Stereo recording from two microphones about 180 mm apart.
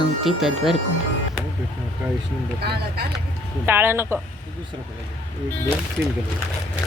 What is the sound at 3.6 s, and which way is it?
Speech, 10° right (ahead or behind).